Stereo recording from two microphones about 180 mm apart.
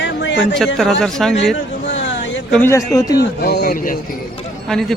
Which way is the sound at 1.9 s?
90° left.